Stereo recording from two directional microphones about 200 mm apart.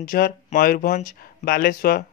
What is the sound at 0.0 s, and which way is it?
Speech, 45° left (ahead or behind).